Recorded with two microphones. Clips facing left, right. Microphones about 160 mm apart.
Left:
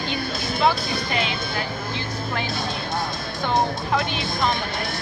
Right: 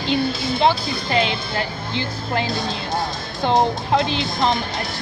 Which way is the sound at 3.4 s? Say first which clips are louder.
Right 5 dB; 30° right (ahead or behind).